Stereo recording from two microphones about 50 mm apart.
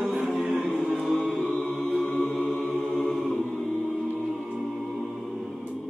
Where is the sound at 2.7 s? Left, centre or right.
Centre.